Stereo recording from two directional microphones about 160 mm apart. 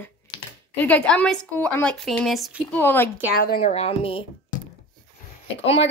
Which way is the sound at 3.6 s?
40° left (ahead or behind).